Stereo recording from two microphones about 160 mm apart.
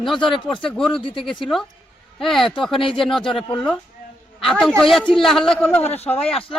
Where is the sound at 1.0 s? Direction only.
35° left (ahead or behind).